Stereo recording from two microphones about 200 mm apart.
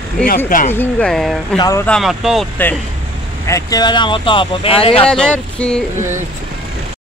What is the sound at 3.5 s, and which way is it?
Speech, 20° left (ahead or behind).